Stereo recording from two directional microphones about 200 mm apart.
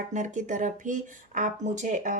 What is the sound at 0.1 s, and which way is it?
Speech, 40° right (ahead or behind).